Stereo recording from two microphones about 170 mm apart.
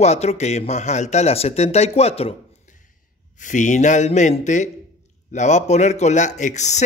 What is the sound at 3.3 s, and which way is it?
Speech, 45° left (ahead or behind).